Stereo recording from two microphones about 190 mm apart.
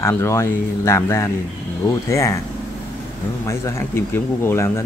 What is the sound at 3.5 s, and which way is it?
Speech, 15° left (ahead or behind).